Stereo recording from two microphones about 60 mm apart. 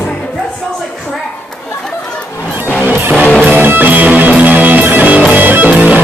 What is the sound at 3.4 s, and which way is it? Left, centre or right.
Music, right.